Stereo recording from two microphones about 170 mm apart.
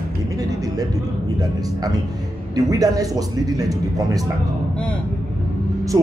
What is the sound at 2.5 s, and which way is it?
Speech, 20° right (ahead or behind).